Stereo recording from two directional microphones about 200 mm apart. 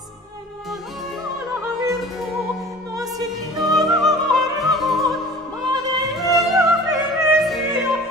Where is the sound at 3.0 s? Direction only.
15° right (ahead or behind).